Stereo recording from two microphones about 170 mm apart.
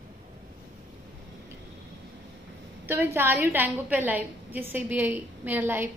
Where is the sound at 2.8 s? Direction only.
10° right (ahead or behind).